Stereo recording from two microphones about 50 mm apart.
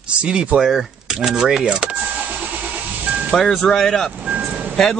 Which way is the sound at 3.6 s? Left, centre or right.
Centre.